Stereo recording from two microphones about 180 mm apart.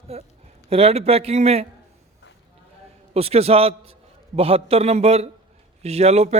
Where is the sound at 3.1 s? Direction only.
35° right (ahead or behind).